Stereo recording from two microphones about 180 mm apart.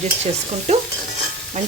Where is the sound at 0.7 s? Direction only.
35° right (ahead or behind).